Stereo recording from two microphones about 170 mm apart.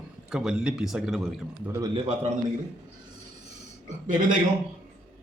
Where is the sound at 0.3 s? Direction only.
5° right (ahead or behind).